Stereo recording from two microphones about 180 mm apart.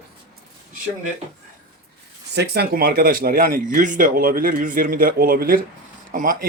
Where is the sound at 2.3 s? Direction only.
65° right (ahead or behind).